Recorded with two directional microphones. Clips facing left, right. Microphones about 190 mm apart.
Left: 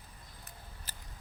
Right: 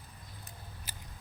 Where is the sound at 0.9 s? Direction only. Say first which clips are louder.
Right 3 dB; 10° right (ahead or behind).